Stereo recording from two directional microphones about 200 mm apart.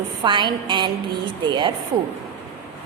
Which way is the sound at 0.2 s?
25° right (ahead or behind).